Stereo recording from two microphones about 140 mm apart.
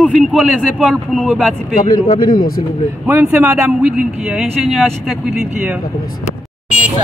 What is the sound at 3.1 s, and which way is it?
Speech, 15° right (ahead or behind).